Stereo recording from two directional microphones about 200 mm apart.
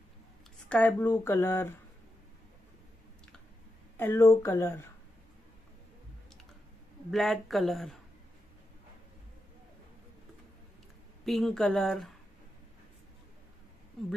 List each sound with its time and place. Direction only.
0.7 s speech: 5° left (ahead or behind)
3.9 s speech: 10° left (ahead or behind)
7.1 s speech: centre (ahead or behind)
11.2 s speech: centre (ahead or behind)